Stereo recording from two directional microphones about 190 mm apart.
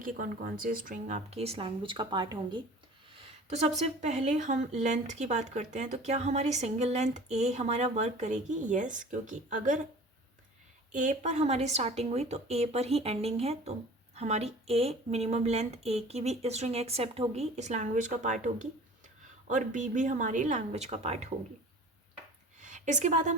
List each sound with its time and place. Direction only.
0.0 s speech: 45° right (ahead or behind); by 2.6 s 25° right (ahead or behind)
3.2 s speech: 35° right (ahead or behind)
10.9 s speech: 40° right (ahead or behind)
22.6 s a woman's voice: 40° right (ahead or behind)